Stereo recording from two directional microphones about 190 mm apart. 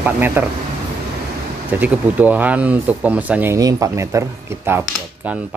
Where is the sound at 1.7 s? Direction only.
10° right (ahead or behind).